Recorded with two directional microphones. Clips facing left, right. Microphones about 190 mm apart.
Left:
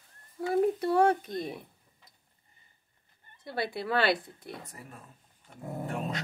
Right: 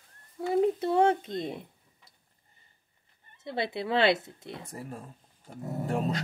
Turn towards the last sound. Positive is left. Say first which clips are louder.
# right 4 dB
turn(degrees=-35)  # may be behind; listen again after turning